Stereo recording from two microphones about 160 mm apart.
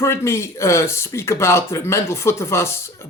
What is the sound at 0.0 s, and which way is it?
Speech, 15° left (ahead or behind).